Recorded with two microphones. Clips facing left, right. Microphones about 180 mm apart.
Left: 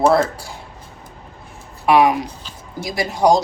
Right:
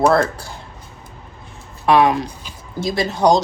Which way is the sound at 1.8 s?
15° left (ahead or behind).